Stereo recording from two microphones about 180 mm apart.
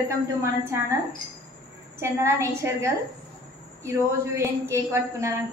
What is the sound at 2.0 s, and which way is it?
A woman's voice, 15° right (ahead or behind).